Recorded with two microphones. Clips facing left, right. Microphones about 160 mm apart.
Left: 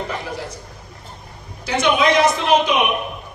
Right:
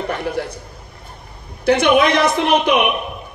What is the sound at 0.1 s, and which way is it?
Speech, 60° right (ahead or behind).